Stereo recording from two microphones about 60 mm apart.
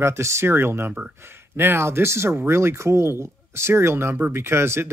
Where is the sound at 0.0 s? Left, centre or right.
Right.